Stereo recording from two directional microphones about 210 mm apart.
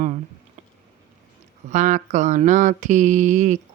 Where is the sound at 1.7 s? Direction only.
35° right (ahead or behind).